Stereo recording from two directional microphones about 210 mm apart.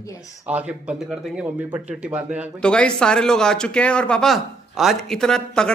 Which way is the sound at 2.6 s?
5° left (ahead or behind).